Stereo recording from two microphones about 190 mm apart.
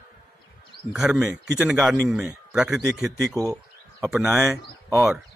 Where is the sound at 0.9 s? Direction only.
5° right (ahead or behind).